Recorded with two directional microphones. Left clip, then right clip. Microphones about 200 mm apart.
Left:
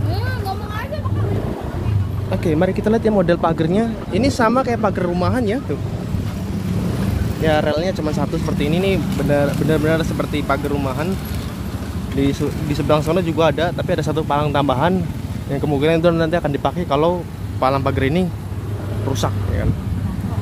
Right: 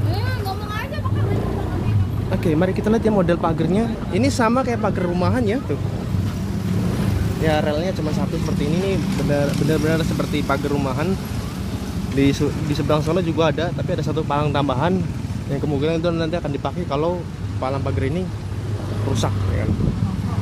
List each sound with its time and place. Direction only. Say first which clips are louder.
2.3 s speech: left 2 dB; centre (ahead or behind)
7.4 s speech: left 3 dB; 15° left (ahead or behind)
12.2 s speech: right 1 dB; 10° right (ahead or behind)
12.7 s speech: left 4 dB; 5° left (ahead or behind)